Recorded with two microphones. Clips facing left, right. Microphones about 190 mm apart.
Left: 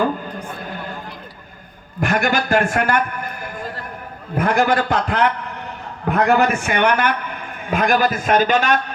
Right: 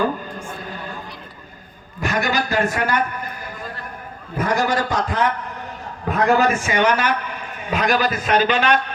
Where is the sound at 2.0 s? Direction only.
50° left (ahead or behind).